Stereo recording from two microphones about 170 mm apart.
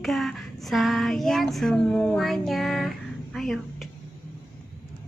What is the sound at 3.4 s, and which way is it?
Speech, centre (ahead or behind).